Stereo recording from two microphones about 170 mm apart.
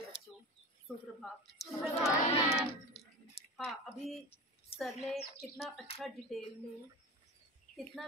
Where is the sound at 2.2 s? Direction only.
35° left (ahead or behind).